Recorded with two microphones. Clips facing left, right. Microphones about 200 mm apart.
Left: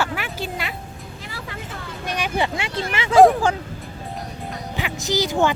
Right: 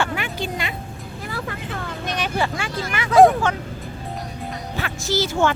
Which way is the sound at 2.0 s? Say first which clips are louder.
Left 1 dB; 10° left (ahead or behind).